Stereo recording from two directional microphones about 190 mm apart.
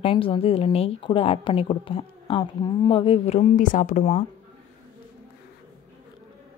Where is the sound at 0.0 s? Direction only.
25° left (ahead or behind).